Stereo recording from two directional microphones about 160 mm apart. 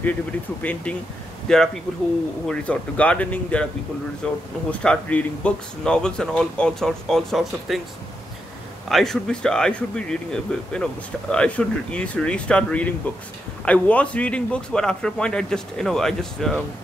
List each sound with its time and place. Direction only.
0.6 s a man's voice: 10° left (ahead or behind)
8.8 s a man's voice: centre (ahead or behind)